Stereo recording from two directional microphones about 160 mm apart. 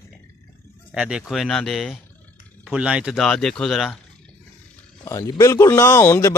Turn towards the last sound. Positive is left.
turn(degrees=15)  # may be behind; listen again after turning